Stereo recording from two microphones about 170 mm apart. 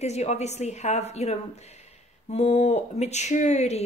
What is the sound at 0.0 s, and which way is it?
Speech, 40° left (ahead or behind).